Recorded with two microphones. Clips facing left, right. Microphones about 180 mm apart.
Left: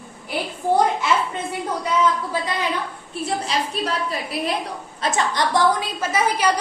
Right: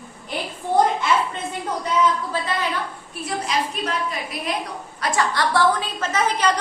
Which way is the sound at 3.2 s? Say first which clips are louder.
Even; 30° left (ahead or behind).